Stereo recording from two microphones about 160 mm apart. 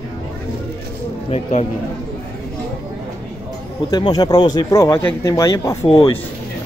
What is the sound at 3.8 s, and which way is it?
Speech, 25° left (ahead or behind).